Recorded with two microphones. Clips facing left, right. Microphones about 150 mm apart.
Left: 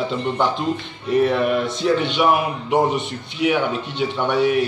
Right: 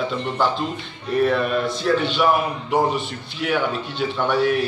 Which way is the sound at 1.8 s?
20° left (ahead or behind).